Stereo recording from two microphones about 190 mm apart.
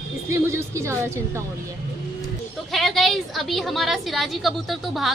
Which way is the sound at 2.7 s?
Centre (ahead or behind).